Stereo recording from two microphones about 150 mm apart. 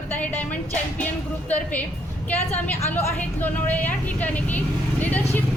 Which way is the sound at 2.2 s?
10° left (ahead or behind).